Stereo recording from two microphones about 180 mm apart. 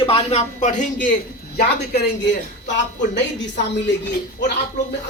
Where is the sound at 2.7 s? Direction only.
80° left.